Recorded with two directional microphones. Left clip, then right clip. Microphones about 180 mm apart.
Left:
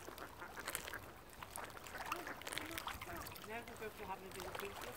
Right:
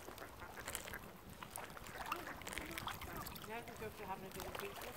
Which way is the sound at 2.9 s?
Centre (ahead or behind).